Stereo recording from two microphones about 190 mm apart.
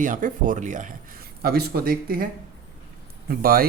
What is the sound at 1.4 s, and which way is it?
Speech, 55° right (ahead or behind).